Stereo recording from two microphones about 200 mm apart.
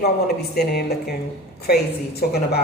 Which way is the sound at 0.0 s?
50° left (ahead or behind).